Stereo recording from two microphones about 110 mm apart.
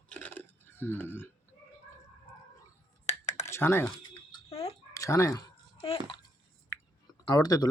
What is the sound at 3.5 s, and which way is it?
Speech, 20° left (ahead or behind).